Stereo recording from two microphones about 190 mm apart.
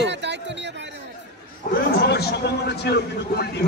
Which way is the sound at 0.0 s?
65° right (ahead or behind).